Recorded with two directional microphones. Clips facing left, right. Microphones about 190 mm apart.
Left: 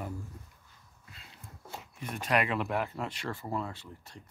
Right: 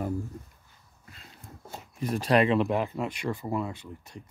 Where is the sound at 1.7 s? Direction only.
40° right (ahead or behind).